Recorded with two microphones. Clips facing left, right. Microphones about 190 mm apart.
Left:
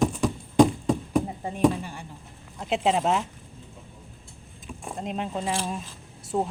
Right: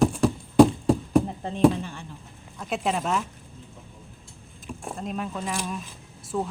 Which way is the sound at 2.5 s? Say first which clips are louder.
Left 3 dB; 25° left (ahead or behind).